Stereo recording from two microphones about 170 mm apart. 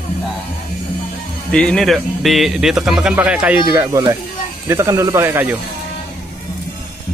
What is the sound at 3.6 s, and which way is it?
Speech, 20° right (ahead or behind).